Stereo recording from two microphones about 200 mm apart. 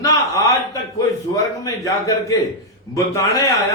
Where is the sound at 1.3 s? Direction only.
15° left (ahead or behind).